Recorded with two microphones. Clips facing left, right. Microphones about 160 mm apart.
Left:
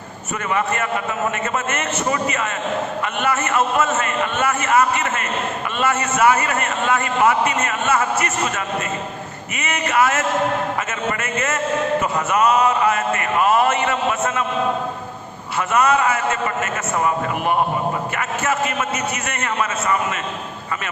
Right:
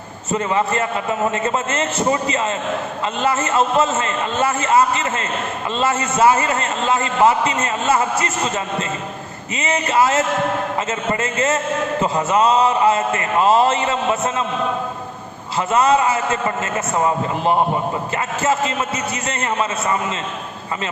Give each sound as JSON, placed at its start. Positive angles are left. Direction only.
{"t": 0.3, "sound": "a man's voice", "side_deg": -25}
{"t": 9.6, "sound": "a man's voice", "side_deg": -30}
{"t": 15.5, "sound": "a man's voice", "side_deg": -25}